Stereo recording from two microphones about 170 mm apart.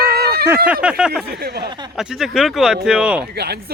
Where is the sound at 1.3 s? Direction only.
65° right (ahead or behind).